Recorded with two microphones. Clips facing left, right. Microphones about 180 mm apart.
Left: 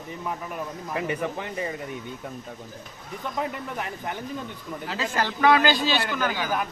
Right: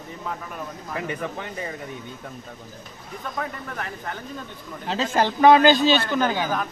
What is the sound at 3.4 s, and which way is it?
Speech, 15° left (ahead or behind).